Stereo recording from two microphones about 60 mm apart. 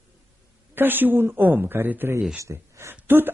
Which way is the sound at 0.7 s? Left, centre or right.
Right.